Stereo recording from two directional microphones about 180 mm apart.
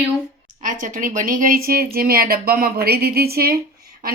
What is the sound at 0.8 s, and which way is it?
A woman's voice, 45° right (ahead or behind).